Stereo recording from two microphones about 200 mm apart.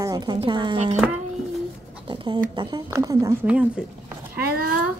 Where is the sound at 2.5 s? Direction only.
20° right (ahead or behind).